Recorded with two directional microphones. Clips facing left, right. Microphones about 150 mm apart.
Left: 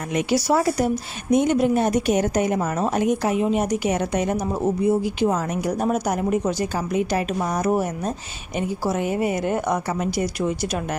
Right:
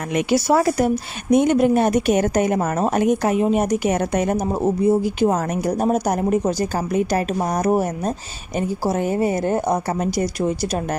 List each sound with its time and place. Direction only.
0.1 s a woman's voice: 60° right (ahead or behind); by 10.2 s 35° right (ahead or behind)